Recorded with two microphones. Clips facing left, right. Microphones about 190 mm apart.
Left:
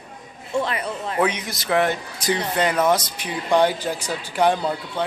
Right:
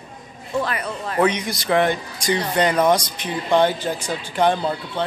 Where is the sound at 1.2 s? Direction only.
5° left (ahead or behind).